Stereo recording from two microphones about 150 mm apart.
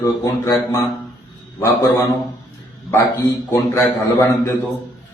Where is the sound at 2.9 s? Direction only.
15° left (ahead or behind).